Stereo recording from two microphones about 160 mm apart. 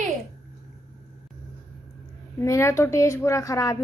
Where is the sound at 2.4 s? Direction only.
15° left (ahead or behind).